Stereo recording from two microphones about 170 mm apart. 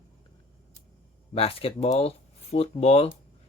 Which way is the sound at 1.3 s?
35° left (ahead or behind).